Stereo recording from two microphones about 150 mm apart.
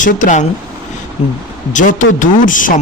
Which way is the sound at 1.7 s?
60° left (ahead or behind).